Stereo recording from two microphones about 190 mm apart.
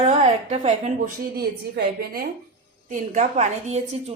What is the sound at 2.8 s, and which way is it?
A woman's voice, 40° right (ahead or behind).